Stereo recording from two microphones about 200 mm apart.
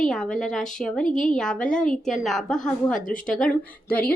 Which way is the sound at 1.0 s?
40° left (ahead or behind).